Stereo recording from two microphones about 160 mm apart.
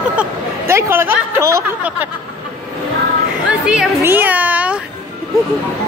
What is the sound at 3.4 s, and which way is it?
Chatter, 5° right (ahead or behind).